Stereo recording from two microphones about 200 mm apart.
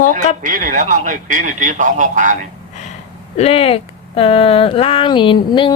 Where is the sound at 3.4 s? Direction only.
30° left (ahead or behind).